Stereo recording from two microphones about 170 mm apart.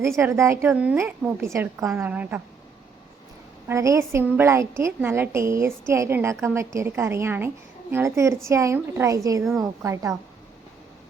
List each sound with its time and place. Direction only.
0.0 s a woman's voice: 15° right (ahead or behind)
3.7 s a woman's voice: 15° right (ahead or behind)
9.4 s a woman's voice: centre (ahead or behind)
9.8 s a woman's voice: 20° right (ahead or behind)